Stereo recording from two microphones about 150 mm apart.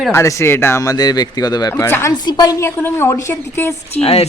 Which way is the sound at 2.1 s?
30° left (ahead or behind).